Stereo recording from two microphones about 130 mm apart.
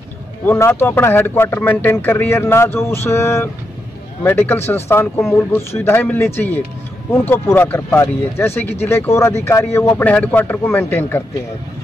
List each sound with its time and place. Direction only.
0.5 s speech: 15° left (ahead or behind)